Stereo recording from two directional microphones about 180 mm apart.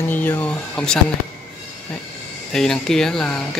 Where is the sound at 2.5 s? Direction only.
5° left (ahead or behind).